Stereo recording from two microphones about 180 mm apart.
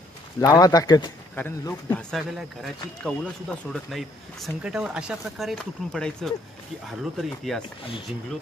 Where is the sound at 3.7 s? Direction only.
Centre (ahead or behind).